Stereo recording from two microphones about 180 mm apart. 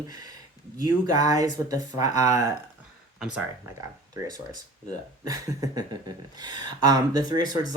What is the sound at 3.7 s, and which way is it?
Speech, 20° right (ahead or behind).